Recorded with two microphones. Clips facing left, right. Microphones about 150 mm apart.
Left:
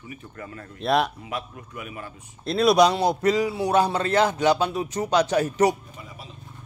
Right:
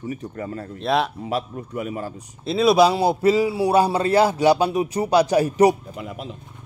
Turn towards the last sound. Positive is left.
turn(degrees=-70)  # may be behind; listen again after turning